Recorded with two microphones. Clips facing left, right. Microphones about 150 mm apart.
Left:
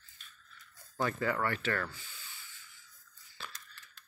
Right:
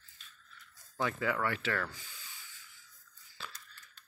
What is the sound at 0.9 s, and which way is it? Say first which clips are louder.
Speech: left 1 dB; centre (ahead or behind).